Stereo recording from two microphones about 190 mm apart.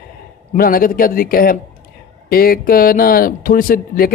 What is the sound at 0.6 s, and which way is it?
Speech, 50° left (ahead or behind).